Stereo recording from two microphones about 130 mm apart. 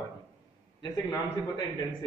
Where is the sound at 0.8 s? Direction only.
35° left (ahead or behind).